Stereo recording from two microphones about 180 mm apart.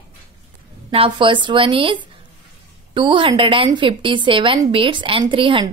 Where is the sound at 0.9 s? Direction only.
30° right (ahead or behind).